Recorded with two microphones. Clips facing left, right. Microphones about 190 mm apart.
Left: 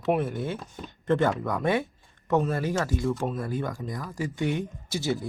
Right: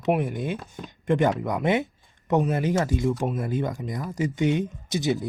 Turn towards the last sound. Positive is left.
turn(degrees=-20)  # may be behind; listen again after turning